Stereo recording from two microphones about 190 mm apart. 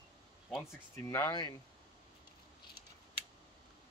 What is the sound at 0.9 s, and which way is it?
Speech, 15° left (ahead or behind).